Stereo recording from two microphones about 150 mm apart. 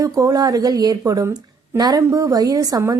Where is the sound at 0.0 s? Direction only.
25° right (ahead or behind).